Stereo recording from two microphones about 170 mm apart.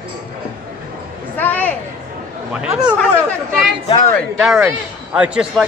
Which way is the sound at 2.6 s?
5° right (ahead or behind).